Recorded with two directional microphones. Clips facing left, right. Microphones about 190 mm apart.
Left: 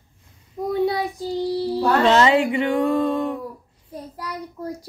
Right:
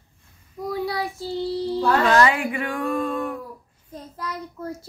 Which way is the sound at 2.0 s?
25° left (ahead or behind).